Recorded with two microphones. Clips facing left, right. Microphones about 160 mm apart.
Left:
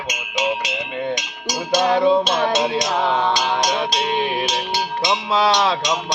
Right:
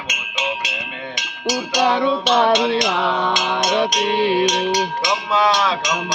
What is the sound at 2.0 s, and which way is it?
Music, 70° right (ahead or behind).